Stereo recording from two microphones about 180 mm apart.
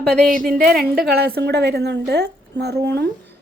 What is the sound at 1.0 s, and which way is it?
A woman's voice, 60° right (ahead or behind).